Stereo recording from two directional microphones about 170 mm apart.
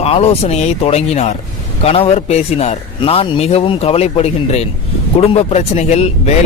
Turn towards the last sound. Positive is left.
turn(degrees=40)  # may be behind; listen again after turning